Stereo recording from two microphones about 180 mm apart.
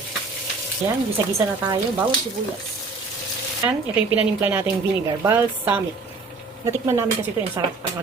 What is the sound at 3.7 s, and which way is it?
A woman's voice, 10° right (ahead or behind).